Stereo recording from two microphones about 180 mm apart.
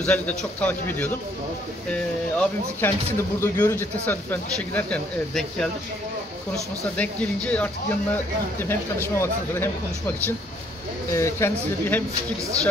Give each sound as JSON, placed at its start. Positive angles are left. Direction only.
{"t": 0.0, "sound": "speech", "side_deg": 5}